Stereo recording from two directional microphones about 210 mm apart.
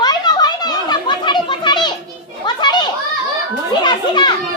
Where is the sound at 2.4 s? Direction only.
20° left (ahead or behind).